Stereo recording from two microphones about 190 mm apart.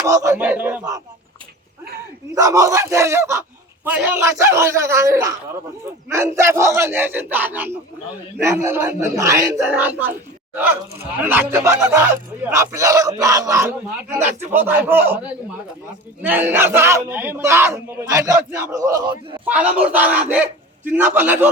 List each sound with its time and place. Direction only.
0.0 s speech: 15° right (ahead or behind)
2.3 s speech: 15° right (ahead or behind)
16.2 s a man's voice: 10° right (ahead or behind)